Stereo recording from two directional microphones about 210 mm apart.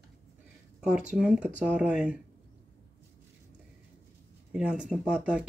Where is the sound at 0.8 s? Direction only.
5° right (ahead or behind).